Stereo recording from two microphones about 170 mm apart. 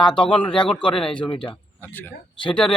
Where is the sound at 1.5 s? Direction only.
10° left (ahead or behind).